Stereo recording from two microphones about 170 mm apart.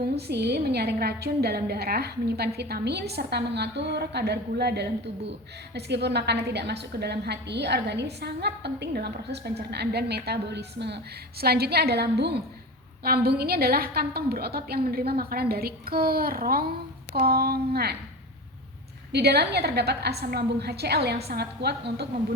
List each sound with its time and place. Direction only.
0.2 s a woman's voice: 75° right (ahead or behind)
19.1 s a woman's voice: 75° right (ahead or behind)